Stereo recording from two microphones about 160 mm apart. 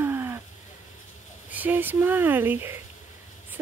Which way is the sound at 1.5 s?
10° right (ahead or behind).